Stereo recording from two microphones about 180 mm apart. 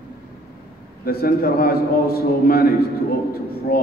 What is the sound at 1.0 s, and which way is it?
A man's voice, 55° left (ahead or behind).